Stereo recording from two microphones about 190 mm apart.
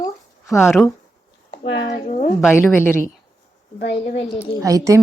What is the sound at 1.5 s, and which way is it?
Speech, 80° left.